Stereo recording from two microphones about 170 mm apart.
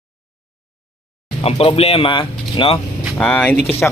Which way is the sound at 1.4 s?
35° left (ahead or behind).